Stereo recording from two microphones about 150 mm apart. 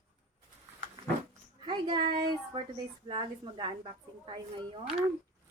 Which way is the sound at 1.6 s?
30° right (ahead or behind).